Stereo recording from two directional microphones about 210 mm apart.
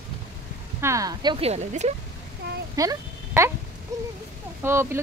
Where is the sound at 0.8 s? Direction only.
15° right (ahead or behind); by 1.9 s 30° right (ahead or behind).